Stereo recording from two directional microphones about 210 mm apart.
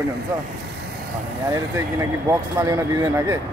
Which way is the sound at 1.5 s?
15° right (ahead or behind).